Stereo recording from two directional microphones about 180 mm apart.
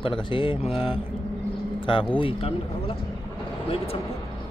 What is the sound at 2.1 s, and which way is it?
Speech, 30° left (ahead or behind).